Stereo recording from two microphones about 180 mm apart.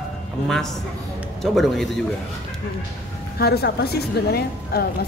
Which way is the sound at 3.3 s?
60° left (ahead or behind).